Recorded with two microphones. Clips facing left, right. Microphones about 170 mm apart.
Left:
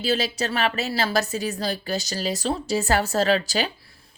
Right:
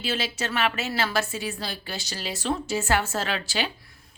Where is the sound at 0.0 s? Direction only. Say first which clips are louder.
Left 5 dB; 35° left (ahead or behind).